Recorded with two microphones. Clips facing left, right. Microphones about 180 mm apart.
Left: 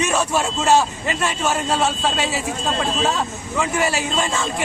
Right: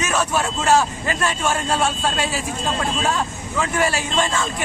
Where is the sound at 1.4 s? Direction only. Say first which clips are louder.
Left 1 dB; centre (ahead or behind).